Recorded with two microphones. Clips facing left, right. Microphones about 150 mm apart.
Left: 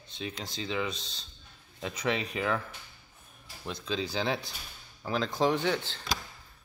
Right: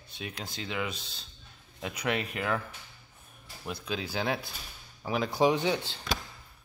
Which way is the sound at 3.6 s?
10° right (ahead or behind).